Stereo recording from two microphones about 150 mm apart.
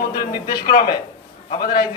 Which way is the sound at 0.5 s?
85° left.